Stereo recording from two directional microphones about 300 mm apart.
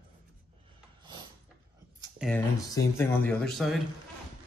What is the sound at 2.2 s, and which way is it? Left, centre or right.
Speech, centre.